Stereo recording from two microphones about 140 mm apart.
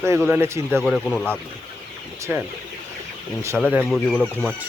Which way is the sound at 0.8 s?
Centre (ahead or behind).